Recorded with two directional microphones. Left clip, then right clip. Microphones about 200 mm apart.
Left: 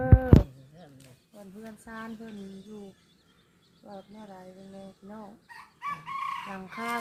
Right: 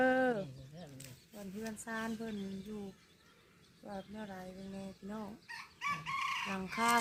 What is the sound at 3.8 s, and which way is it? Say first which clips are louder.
Speech: left 1 dB; 35° right (ahead or behind).